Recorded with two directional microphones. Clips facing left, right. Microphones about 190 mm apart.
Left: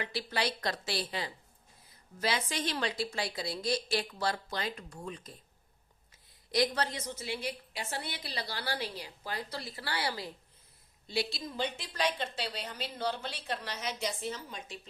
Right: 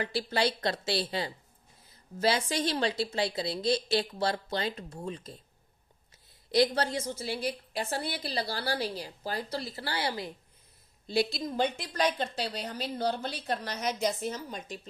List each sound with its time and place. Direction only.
0.0 s a woman's voice: 30° right (ahead or behind)
6.5 s a woman's voice: 30° right (ahead or behind)
9.5 s a woman's voice: 30° right (ahead or behind)
11.1 s a woman's voice: 50° right (ahead or behind)